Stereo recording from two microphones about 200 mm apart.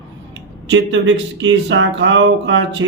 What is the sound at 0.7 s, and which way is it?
Speech, 65° right (ahead or behind).